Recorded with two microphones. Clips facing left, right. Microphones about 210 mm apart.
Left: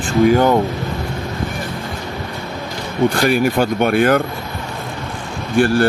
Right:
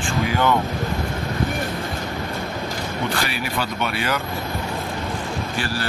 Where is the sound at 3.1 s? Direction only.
45° left (ahead or behind).